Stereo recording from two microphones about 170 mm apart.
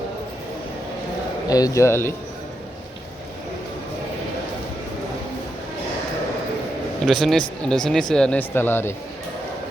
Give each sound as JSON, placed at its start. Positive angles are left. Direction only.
{"t": 1.5, "sound": "speech", "side_deg": 20}
{"t": 7.0, "sound": "a man's voice", "side_deg": 0}